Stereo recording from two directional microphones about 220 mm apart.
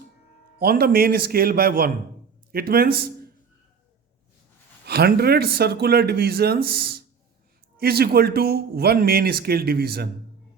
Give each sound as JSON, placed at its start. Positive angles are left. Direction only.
{"t": 0.6, "sound": "speech", "side_deg": -45}
{"t": 4.9, "sound": "speech", "side_deg": -45}